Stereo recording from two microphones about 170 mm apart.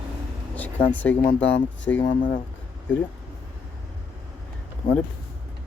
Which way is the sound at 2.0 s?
25° left (ahead or behind).